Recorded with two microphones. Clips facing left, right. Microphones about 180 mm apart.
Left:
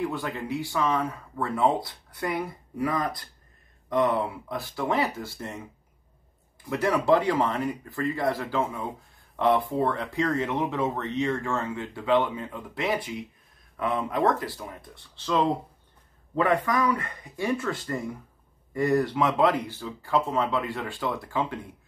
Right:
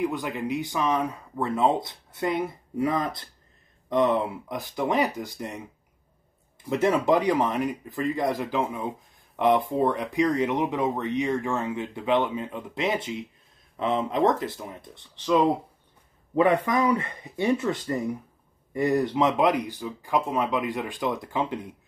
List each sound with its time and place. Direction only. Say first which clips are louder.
0.0 s speech: right 2 dB; 15° right (ahead or behind)
6.7 s speech: right 1 dB; 20° right (ahead or behind)